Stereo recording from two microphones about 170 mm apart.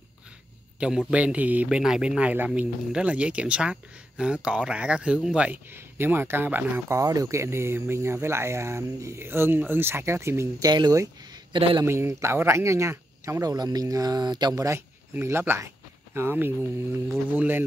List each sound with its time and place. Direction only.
0.7 s a man's voice: 5° right (ahead or behind); by 11.8 s 30° right (ahead or behind)
11.8 s speech: 15° right (ahead or behind)